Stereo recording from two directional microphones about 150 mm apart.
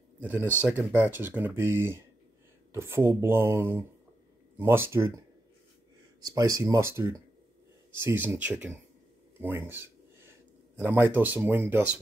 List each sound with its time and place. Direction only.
0.2 s speech: 10° right (ahead or behind)
6.2 s speech: 20° right (ahead or behind)
9.4 s a sound: 15° right (ahead or behind)
10.8 s speech: 10° right (ahead or behind)